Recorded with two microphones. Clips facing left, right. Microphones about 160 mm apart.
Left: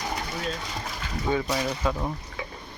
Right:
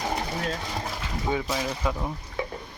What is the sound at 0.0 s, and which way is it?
Sewing machine, 30° right (ahead or behind).